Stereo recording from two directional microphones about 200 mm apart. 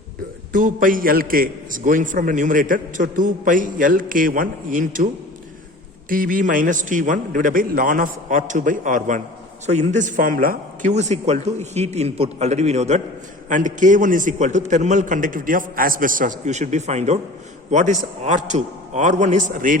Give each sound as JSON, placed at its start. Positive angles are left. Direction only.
{"t": 0.5, "sound": "a man's voice", "side_deg": -40}
{"t": 6.1, "sound": "a man's voice", "side_deg": -45}